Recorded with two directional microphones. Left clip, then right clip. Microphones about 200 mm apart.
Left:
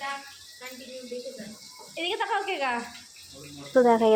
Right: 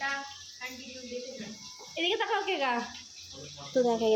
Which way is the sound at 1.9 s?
20° right (ahead or behind).